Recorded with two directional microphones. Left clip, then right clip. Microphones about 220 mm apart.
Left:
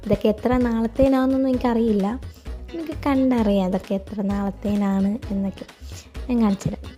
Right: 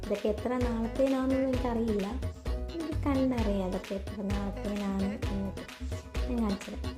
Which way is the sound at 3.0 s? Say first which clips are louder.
Left 10 dB; 45° left (ahead or behind).